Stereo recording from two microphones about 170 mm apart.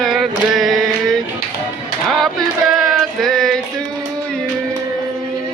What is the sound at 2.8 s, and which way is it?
Music, centre (ahead or behind).